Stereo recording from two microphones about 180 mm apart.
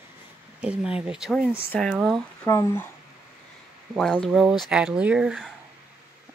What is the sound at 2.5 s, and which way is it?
Speech, 15° left (ahead or behind).